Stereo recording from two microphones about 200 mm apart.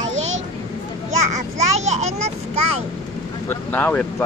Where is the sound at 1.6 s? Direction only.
35° right (ahead or behind).